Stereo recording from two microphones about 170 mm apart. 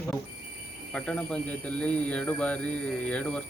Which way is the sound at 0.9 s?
5° left (ahead or behind).